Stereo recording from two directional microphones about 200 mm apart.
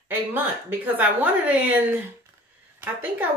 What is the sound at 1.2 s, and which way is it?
Speech, 10° right (ahead or behind).